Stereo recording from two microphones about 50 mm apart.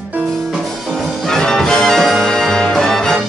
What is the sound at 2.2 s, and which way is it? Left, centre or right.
Music, centre.